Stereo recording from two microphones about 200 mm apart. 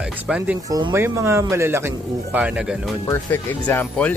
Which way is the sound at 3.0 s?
10° left (ahead or behind).